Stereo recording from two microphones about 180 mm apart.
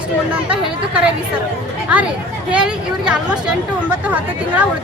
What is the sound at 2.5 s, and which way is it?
Speech, 5° right (ahead or behind).